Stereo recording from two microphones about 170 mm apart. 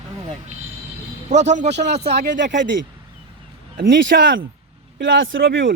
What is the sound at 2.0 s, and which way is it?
Speech, 75° right (ahead or behind).